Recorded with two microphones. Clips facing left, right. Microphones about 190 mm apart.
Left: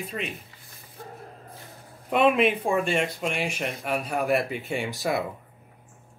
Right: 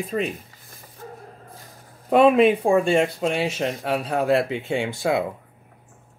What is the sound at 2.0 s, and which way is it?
Speech, 35° right (ahead or behind).